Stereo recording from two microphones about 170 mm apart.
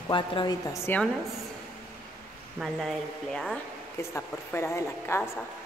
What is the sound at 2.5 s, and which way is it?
Speech, centre (ahead or behind).